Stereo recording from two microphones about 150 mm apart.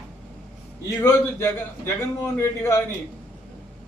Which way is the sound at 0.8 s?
20° left (ahead or behind).